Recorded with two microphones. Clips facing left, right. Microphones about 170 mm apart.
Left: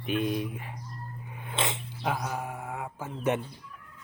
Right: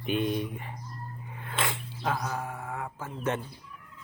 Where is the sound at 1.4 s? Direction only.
20° left (ahead or behind).